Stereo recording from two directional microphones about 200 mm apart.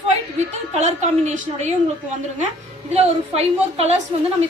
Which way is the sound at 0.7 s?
35° right (ahead or behind).